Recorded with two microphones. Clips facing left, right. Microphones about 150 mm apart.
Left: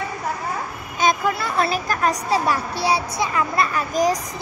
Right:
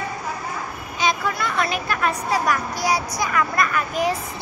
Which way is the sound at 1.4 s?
35° left (ahead or behind).